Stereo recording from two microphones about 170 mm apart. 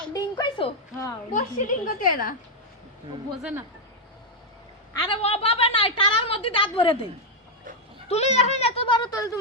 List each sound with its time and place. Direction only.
0.1 s speech: 25° left (ahead or behind)
1.3 s a woman's voice: 50° left (ahead or behind)
3.3 s speech: 5° right (ahead or behind)
4.9 s a woman's voice: 30° left (ahead or behind)
8.0 s a woman's voice: 40° left (ahead or behind)
9.0 s speech: 20° left (ahead or behind)